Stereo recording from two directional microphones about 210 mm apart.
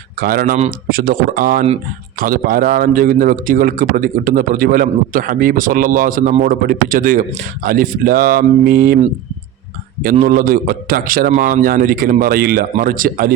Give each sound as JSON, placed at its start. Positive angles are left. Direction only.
{"t": 0.2, "sound": "a man's voice", "side_deg": -45}
{"t": 10.0, "sound": "a man's voice", "side_deg": -45}